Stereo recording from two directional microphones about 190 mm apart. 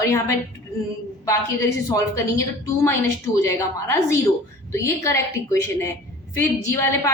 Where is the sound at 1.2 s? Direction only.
15° left (ahead or behind).